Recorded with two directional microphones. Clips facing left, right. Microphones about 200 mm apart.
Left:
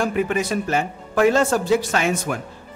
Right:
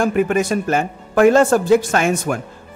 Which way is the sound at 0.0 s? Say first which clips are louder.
Right 5 dB; 50° right (ahead or behind).